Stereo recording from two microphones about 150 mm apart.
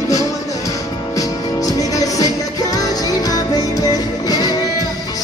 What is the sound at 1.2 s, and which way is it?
Music, 25° left (ahead or behind).